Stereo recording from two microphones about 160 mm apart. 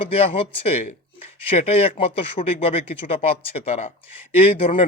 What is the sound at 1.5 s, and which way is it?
Speech, 40° left (ahead or behind).